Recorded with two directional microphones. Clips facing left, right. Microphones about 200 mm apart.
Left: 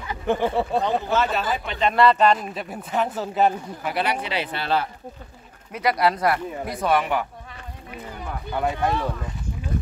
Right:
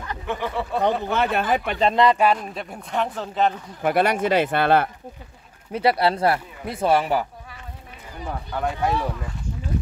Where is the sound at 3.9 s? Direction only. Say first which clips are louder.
Right 7 dB; 50° right (ahead or behind).